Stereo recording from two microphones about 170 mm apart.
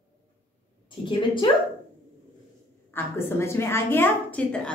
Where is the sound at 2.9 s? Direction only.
15° left (ahead or behind).